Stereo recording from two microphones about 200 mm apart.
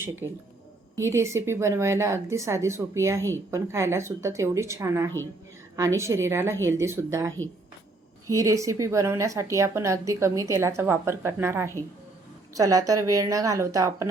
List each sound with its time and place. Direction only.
0.2 s a woman's voice: 15° right (ahead or behind)